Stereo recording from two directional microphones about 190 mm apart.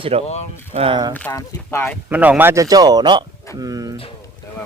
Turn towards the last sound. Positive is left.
turn(degrees=-20)  # may be behind; listen again after turning